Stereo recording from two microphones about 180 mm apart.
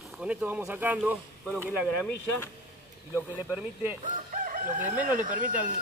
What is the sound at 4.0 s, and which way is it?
Speech, 45° right (ahead or behind).